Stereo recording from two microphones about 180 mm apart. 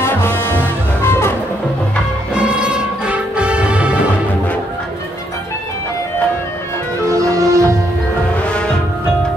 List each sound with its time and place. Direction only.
0.0 s music: 10° left (ahead or behind)
2.3 s music: 5° right (ahead or behind)
7.1 s music: 20° right (ahead or behind)
8.4 s music: 5° left (ahead or behind)